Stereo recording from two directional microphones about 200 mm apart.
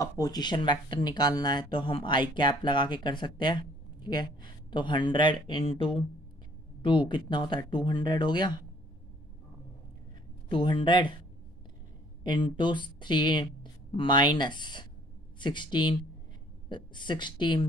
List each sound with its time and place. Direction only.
0.2 s speech: 20° left (ahead or behind)
10.5 s speech: 25° left (ahead or behind)
12.2 s a woman's voice: 25° left (ahead or behind)